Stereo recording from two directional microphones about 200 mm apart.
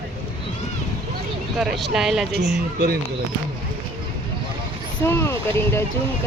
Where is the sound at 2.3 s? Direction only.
55° right (ahead or behind).